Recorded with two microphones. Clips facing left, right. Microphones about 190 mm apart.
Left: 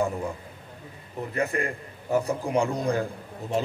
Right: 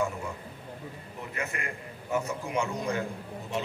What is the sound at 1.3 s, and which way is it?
A man's voice, 35° left (ahead or behind).